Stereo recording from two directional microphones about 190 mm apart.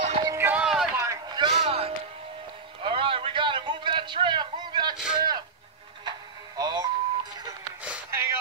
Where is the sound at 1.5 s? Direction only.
35° right (ahead or behind).